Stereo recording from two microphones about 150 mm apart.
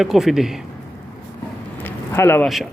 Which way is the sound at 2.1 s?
15° left (ahead or behind).